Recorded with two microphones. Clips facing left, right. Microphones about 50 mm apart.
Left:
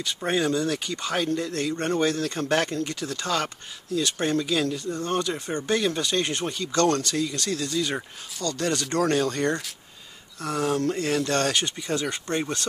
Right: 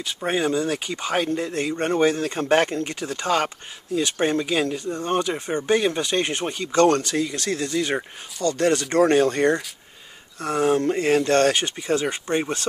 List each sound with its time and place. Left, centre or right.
0.0 s speech: centre